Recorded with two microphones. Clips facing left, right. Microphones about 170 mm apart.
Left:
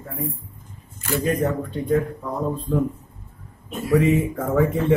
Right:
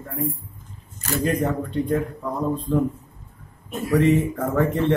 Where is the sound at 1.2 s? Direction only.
Centre (ahead or behind).